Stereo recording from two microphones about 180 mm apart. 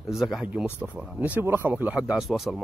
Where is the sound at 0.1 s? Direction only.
Centre (ahead or behind).